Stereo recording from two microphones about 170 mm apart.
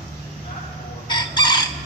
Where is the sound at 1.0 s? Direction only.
25° left (ahead or behind).